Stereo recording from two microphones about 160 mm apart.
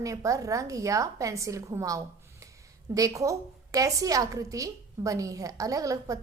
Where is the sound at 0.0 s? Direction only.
20° right (ahead or behind).